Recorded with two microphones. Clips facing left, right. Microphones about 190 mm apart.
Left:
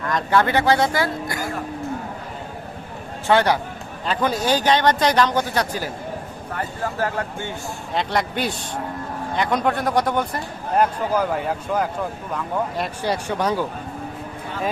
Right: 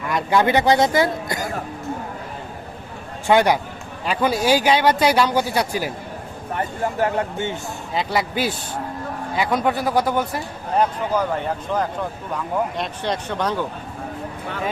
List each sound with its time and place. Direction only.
0.0 s speech: 10° right (ahead or behind)
3.2 s speech: 15° right (ahead or behind)
7.9 s a man's voice: 5° right (ahead or behind)
10.8 s speech: 10° left (ahead or behind)